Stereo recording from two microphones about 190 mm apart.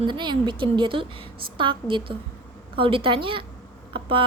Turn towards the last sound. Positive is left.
turn(degrees=-25)  # may be behind; listen again after turning